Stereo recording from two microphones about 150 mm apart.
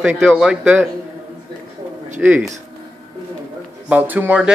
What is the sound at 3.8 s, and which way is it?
Speech, 10° right (ahead or behind).